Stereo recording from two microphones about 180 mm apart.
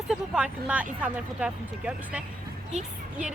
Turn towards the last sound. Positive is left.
turn(degrees=-5)  # may be behind; listen again after turning